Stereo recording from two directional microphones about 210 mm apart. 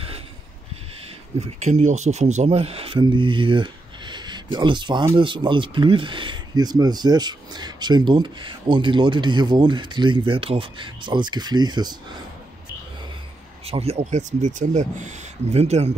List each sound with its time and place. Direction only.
1.4 s speech: 35° right (ahead or behind)
13.7 s speech: 30° right (ahead or behind)